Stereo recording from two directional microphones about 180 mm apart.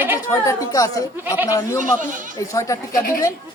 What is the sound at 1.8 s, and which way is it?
Speech, 45° right (ahead or behind).